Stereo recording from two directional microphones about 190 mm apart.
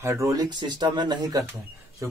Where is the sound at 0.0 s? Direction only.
15° right (ahead or behind).